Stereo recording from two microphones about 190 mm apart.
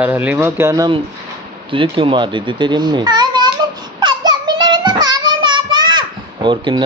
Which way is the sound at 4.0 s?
20° right (ahead or behind).